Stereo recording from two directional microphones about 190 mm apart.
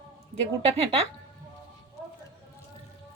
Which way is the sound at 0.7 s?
30° right (ahead or behind).